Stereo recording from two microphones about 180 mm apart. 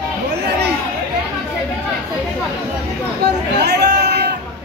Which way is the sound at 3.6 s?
65° right (ahead or behind).